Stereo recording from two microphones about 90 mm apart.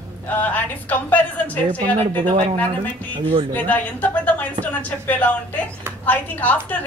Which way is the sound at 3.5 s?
20° left (ahead or behind).